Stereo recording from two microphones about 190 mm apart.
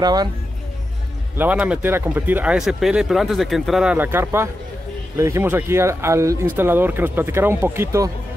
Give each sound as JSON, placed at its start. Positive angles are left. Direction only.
{"t": 0.0, "sound": "speech", "side_deg": -20}
{"t": 1.4, "sound": "speech", "side_deg": -5}